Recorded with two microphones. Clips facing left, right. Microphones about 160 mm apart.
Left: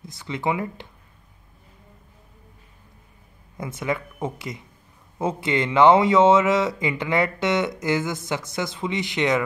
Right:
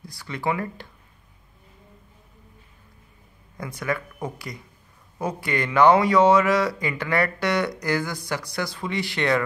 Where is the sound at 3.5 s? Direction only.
25° left (ahead or behind).